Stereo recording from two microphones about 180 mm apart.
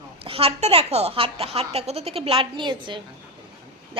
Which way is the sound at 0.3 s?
30° right (ahead or behind).